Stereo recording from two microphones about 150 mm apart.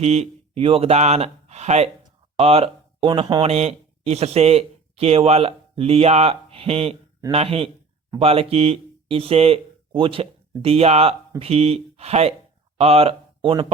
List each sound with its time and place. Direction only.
0.0 s speech: 45° right (ahead or behind)
3.5 s speech: 45° right (ahead or behind)